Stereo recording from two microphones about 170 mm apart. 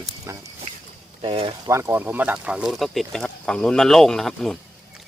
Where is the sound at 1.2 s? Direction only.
30° right (ahead or behind).